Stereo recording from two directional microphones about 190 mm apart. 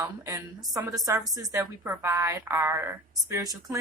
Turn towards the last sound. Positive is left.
turn(degrees=-15)  # may be behind; listen again after turning